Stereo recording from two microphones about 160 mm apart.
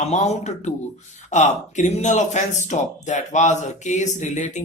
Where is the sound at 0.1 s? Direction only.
45° left (ahead or behind).